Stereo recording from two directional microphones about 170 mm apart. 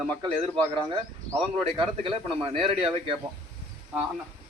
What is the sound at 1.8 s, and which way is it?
Speech, 30° right (ahead or behind).